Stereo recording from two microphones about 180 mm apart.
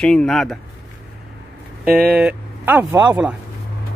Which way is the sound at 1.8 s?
5° right (ahead or behind).